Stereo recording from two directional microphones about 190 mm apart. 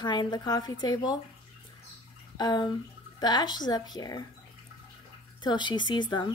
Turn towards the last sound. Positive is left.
turn(degrees=25)  # may be behind; listen again after turning